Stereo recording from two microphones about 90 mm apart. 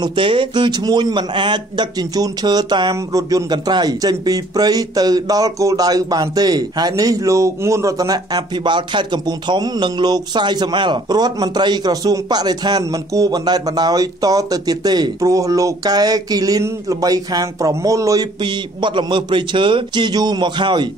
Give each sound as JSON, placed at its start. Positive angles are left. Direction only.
{"t": 0.0, "sound": "a man's voice", "side_deg": -70}
{"t": 2.9, "sound": "a man's voice", "side_deg": -40}
{"t": 18.4, "sound": "a man's voice", "side_deg": -65}